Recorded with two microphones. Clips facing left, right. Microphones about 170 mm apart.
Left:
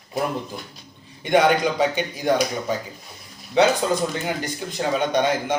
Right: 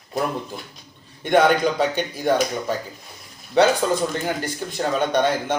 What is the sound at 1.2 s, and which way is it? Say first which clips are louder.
Speech: right 1 dB; 10° left (ahead or behind).